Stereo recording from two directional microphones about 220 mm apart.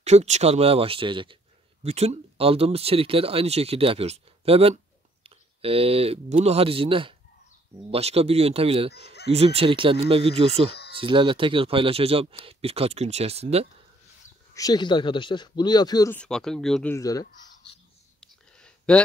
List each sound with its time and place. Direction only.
0.0 s a man's voice: 30° right (ahead or behind)
14.5 s speech: 15° left (ahead or behind)
16.2 s speech: 5° left (ahead or behind)
16.9 s speech: 15° left (ahead or behind)
18.2 s a sound: 5° left (ahead or behind)